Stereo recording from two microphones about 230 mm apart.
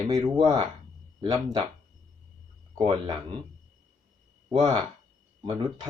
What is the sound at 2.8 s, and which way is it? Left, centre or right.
Speech, right.